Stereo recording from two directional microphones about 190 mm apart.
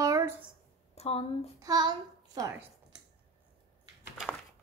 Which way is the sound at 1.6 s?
20° right (ahead or behind).